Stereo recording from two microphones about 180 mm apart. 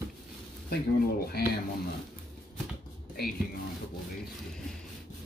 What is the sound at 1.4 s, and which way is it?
Speech, 60° left (ahead or behind).